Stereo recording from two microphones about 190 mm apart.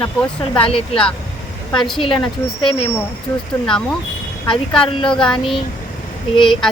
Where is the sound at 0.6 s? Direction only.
25° left (ahead or behind).